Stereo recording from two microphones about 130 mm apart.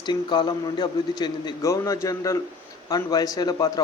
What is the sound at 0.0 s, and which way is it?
Speech, 35° left (ahead or behind).